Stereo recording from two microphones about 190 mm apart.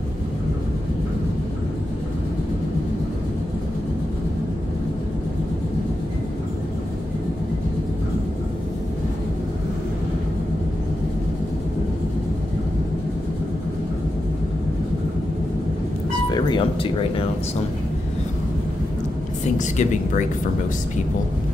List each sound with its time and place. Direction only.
16.3 s music: 20° left (ahead or behind)
19.6 s speech: 40° left (ahead or behind)